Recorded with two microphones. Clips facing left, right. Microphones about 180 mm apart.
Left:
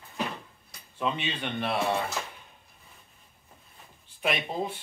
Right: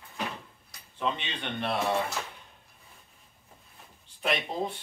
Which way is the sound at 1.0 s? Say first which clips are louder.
Left 2 dB; 5° left (ahead or behind).